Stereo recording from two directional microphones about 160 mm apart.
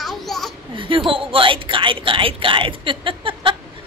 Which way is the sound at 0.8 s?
30° right (ahead or behind).